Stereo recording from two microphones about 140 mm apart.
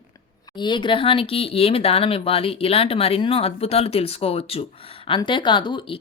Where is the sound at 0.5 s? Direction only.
35° left (ahead or behind).